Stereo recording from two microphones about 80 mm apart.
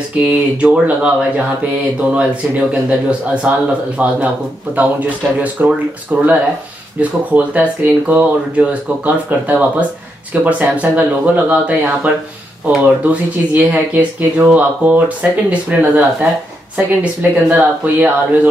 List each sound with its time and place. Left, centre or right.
0.3 s speech: centre